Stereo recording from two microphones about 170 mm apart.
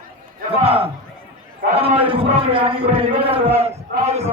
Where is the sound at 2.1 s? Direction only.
30° right (ahead or behind).